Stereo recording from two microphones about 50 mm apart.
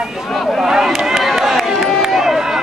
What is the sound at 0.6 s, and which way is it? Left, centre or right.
Run, centre.